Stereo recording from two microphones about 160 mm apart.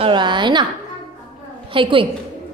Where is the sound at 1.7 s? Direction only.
30° right (ahead or behind).